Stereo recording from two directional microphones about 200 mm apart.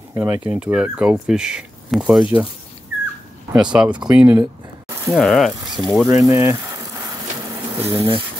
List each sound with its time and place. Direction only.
0.1 s speech: 10° right (ahead or behind)
3.7 s speech: 5° right (ahead or behind)
5.0 s speech: centre (ahead or behind)
6.0 s speech: 15° right (ahead or behind)
7.8 s speech: 25° right (ahead or behind)